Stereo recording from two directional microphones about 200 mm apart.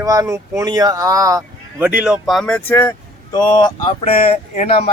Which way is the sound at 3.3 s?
20° left (ahead or behind).